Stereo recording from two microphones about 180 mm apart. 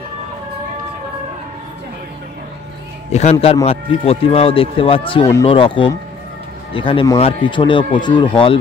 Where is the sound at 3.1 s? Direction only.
35° left (ahead or behind).